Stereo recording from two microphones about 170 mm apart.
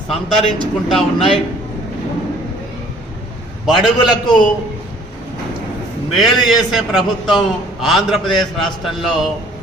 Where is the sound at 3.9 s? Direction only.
25° left (ahead or behind).